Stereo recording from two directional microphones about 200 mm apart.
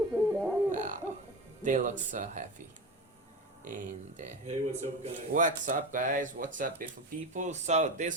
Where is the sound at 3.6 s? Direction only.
40° right (ahead or behind).